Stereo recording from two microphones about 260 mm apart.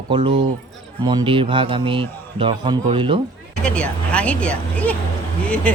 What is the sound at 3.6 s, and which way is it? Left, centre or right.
Speech, centre.